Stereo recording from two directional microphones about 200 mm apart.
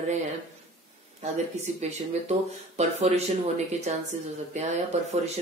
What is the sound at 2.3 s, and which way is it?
Speech, 35° right (ahead or behind).